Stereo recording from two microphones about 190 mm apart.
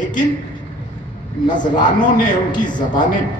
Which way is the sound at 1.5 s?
25° left (ahead or behind).